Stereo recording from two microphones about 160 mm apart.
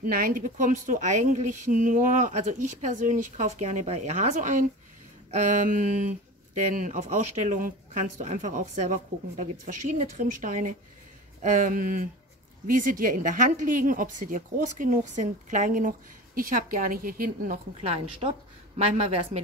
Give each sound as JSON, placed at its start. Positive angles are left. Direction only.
{"t": 0.0, "sound": "a woman's voice", "side_deg": -60}
{"t": 19.0, "sound": "speech", "side_deg": -40}